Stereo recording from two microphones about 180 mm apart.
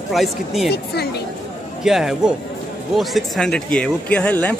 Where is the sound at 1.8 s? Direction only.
5° right (ahead or behind).